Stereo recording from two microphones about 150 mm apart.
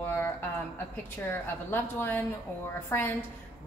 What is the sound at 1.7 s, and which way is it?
A woman's voice, 15° left (ahead or behind).